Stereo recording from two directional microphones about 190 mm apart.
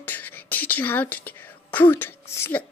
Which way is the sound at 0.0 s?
10° left (ahead or behind).